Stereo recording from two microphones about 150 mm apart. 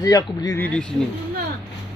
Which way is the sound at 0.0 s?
25° left (ahead or behind).